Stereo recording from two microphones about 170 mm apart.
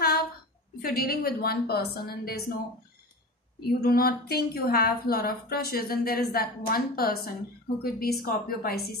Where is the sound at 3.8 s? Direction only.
65° left (ahead or behind).